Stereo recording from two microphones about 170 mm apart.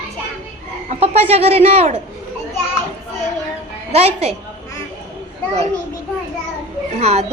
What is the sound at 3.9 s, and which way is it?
Speech, 35° right (ahead or behind).